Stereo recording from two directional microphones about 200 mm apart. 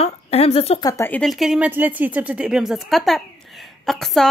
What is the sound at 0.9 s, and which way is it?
Speech, 10° left (ahead or behind).